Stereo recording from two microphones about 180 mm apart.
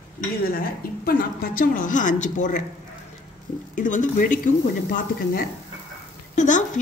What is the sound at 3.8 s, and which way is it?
A woman's voice, 45° left (ahead or behind).